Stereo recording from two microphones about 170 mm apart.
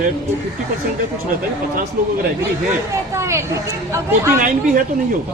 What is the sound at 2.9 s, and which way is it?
A woman's voice, 15° right (ahead or behind).